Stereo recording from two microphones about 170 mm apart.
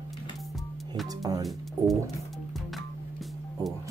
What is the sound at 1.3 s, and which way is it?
Speech, 25° right (ahead or behind).